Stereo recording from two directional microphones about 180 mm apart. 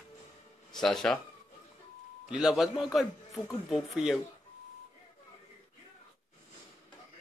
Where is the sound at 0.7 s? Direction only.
Centre (ahead or behind).